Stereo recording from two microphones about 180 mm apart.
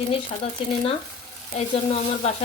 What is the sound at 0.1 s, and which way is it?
Speech, 30° left (ahead or behind).